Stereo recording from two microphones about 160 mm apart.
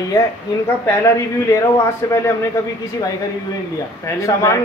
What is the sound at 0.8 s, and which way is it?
A man's voice, 20° left (ahead or behind).